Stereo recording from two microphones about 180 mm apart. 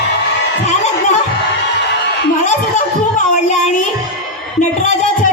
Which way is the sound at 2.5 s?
40° left (ahead or behind).